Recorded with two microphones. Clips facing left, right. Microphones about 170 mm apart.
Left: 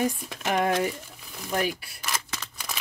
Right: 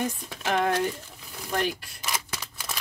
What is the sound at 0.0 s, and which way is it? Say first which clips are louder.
Speech: left 3 dB; 10° left (ahead or behind).